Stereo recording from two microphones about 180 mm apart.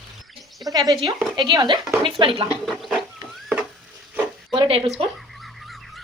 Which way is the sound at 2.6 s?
Centre (ahead or behind).